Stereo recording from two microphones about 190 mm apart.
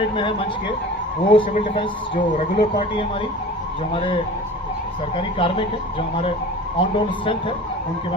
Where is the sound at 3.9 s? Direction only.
30° left (ahead or behind).